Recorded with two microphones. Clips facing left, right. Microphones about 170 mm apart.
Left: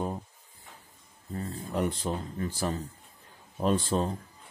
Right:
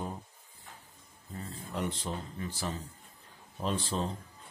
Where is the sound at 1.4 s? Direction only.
45° left (ahead or behind).